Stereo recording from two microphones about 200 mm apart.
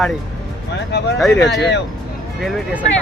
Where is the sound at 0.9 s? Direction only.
55° left (ahead or behind).